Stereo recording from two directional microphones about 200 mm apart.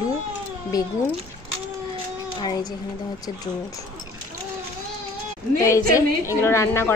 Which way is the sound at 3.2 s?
20° left (ahead or behind).